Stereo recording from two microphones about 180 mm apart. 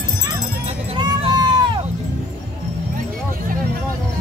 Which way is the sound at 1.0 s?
25° right (ahead or behind).